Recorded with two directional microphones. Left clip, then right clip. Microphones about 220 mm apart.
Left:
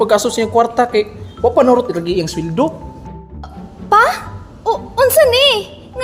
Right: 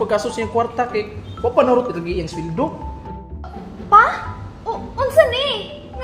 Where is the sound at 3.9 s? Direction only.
35° left (ahead or behind).